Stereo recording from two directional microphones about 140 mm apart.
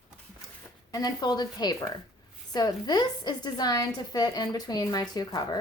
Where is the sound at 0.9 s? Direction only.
30° left (ahead or behind).